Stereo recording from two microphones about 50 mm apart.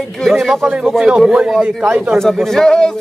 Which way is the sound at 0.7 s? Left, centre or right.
Centre.